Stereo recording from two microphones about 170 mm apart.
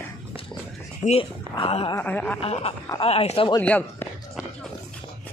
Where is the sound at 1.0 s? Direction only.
35° left (ahead or behind).